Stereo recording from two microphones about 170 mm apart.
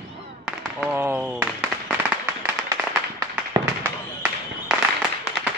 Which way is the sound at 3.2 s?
15° right (ahead or behind).